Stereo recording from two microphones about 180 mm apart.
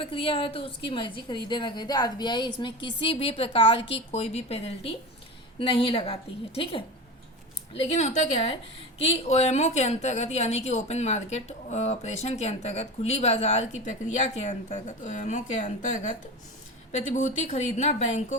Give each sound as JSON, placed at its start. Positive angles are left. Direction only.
{"t": 0.0, "sound": "a woman's voice", "side_deg": 30}
{"t": 16.9, "sound": "a woman's voice", "side_deg": 40}